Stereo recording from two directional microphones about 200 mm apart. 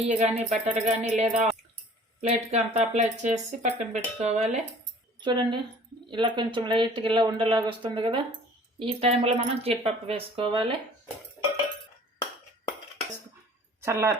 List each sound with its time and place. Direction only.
0.2 s speech: 35° right (ahead or behind)
13.8 s speech: 15° right (ahead or behind)